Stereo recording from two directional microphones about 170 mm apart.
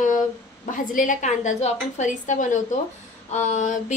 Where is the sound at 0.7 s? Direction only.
50° left (ahead or behind).